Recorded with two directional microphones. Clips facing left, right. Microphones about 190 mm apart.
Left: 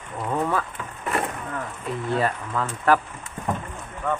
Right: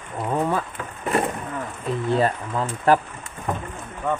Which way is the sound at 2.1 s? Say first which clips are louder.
Right 3 dB; 25° right (ahead or behind).